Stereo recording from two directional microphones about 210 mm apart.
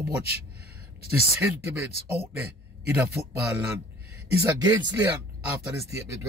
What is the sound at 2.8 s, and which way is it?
Speech, 10° right (ahead or behind).